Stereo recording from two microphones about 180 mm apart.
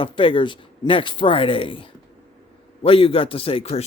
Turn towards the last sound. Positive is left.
turn(degrees=35)  # may be behind; listen again after turning